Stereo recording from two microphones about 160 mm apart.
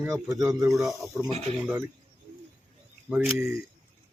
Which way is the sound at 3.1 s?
Centre (ahead or behind).